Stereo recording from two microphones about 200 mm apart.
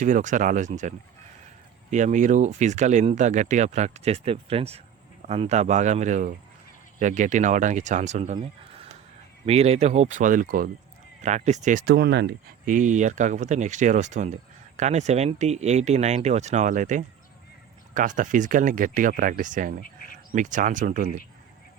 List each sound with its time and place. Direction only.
0.0 s speech: 40° right (ahead or behind)